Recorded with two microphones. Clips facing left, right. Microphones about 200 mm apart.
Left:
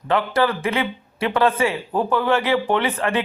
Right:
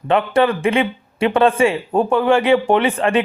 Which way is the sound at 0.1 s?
25° right (ahead or behind).